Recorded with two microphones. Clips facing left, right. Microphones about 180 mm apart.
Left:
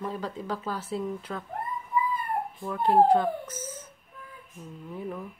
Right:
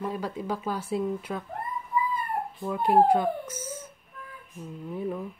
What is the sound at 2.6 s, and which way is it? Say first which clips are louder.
Speech: even; 10° right (ahead or behind).